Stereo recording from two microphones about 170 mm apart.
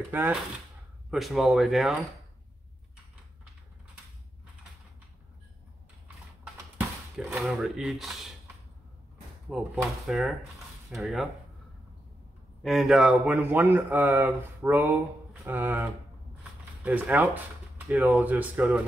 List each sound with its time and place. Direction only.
0.1 s speech: 10° right (ahead or behind)
7.4 s speech: centre (ahead or behind)
9.5 s speech: 5° right (ahead or behind)
12.6 s speech: centre (ahead or behind)